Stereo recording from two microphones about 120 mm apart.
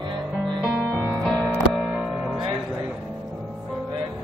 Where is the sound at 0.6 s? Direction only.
5° right (ahead or behind).